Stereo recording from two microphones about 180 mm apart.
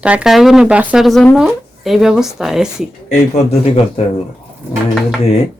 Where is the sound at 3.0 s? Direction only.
35° left (ahead or behind).